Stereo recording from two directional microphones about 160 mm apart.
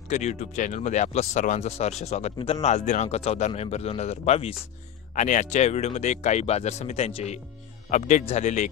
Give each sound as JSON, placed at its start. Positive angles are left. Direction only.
{"t": 0.1, "sound": "a man's voice", "side_deg": 45}
{"t": 5.1, "sound": "speech", "side_deg": 50}
{"t": 7.9, "sound": "speech", "side_deg": 50}